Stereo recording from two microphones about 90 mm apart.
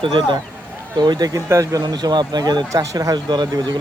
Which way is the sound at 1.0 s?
50° right (ahead or behind).